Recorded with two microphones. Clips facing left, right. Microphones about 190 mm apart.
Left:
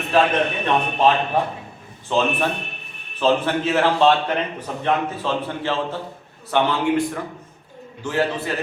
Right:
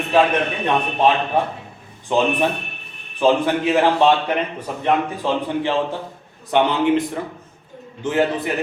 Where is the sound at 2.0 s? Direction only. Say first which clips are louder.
Right 2 dB; 15° right (ahead or behind).